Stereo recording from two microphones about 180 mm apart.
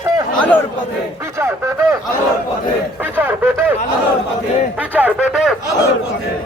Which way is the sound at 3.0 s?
10° right (ahead or behind).